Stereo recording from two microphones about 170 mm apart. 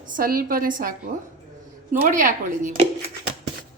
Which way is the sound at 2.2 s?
50° right (ahead or behind).